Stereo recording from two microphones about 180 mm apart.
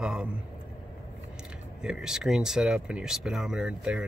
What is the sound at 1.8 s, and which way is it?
Speech, 5° right (ahead or behind).